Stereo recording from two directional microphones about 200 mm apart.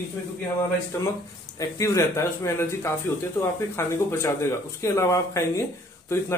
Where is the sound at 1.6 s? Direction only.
15° left (ahead or behind).